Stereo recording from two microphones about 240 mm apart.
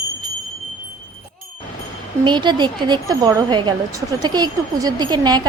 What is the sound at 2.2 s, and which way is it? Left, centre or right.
A woman's voice, centre.